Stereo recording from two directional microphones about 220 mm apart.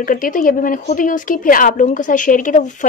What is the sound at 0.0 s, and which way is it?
A woman's voice, 40° left (ahead or behind).